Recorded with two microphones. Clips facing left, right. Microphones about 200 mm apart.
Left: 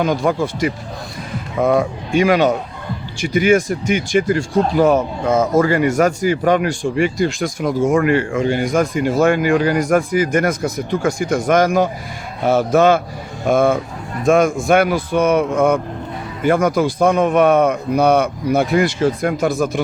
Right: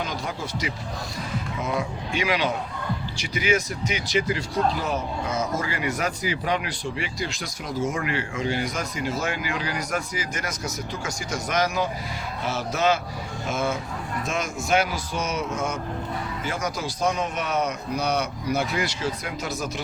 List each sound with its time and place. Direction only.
0.0 s a man's voice: 55° left (ahead or behind)